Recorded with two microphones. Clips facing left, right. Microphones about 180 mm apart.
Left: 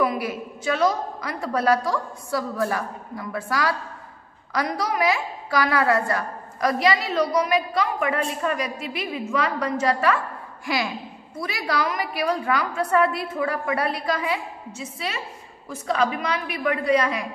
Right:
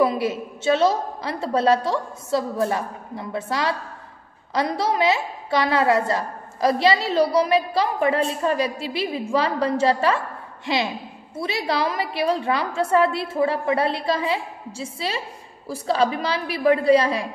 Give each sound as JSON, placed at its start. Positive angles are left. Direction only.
{"t": 0.0, "sound": "a woman's voice", "side_deg": -25}